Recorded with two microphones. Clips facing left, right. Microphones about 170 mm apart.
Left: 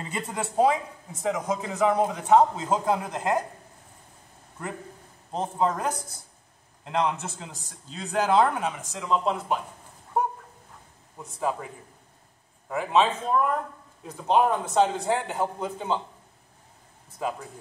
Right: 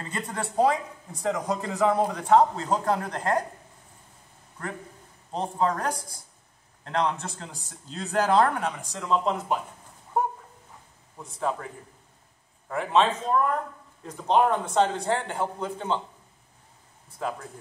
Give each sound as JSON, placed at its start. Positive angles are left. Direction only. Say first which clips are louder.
{"t": 0.0, "sound": "a man's voice", "louder": "left 1 dB", "side_deg": 10}
{"t": 5.3, "sound": "a man's voice", "louder": "even", "side_deg": 5}
{"t": 11.1, "sound": "a man's voice", "louder": "even", "side_deg": 5}
{"t": 17.2, "sound": "a man's voice", "louder": "left 1 dB", "side_deg": 5}